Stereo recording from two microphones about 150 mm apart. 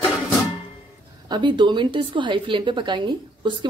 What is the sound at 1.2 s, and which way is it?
A woman's voice, 30° right (ahead or behind).